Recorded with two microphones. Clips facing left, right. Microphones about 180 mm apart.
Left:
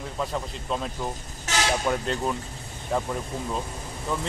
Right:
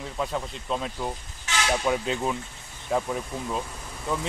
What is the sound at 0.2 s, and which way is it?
Speech, centre (ahead or behind).